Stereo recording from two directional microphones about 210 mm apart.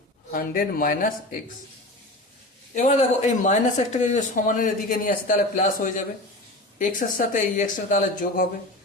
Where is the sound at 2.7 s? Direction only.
35° left (ahead or behind).